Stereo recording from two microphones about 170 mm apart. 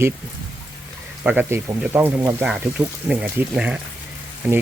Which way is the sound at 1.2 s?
10° right (ahead or behind).